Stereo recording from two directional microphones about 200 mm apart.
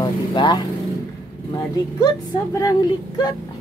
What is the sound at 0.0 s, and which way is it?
Vehicle, 20° left (ahead or behind).